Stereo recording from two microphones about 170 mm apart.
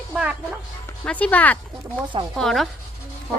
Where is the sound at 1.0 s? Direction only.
10° left (ahead or behind).